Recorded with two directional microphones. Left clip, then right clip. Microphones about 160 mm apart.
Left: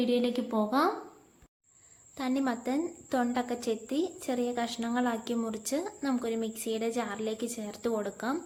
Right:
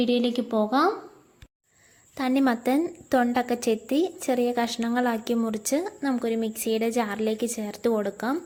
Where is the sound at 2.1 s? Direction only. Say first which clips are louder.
Right 8 dB; 35° right (ahead or behind).